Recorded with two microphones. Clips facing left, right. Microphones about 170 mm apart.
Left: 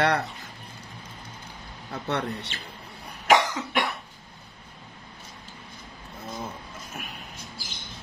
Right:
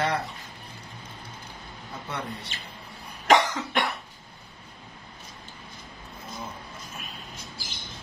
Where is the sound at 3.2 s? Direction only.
5° left (ahead or behind).